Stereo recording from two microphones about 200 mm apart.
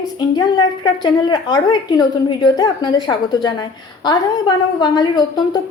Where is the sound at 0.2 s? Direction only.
20° left (ahead or behind).